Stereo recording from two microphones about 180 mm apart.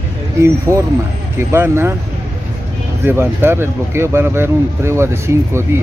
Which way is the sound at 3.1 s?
10° right (ahead or behind).